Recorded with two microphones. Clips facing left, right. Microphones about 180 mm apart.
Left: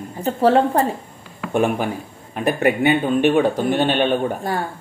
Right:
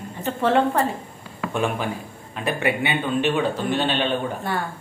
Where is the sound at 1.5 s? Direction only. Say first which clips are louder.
Left 6 dB; 50° left (ahead or behind).